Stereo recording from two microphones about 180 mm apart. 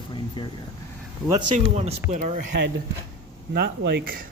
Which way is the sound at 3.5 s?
65° right (ahead or behind).